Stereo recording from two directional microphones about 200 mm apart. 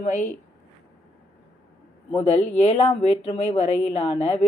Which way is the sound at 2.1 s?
30° left (ahead or behind).